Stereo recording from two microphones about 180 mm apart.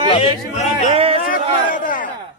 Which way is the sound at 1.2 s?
50° left (ahead or behind).